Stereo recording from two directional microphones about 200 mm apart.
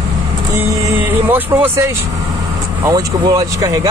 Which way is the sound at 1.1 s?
10° right (ahead or behind).